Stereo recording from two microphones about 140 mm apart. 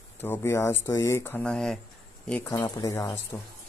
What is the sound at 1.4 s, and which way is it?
Speech, 5° left (ahead or behind).